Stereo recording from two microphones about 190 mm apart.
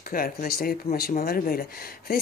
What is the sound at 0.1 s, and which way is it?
Speech, 50° left (ahead or behind).